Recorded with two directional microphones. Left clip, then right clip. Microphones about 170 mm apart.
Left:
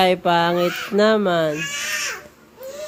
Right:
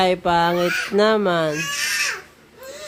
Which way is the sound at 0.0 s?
15° right (ahead or behind).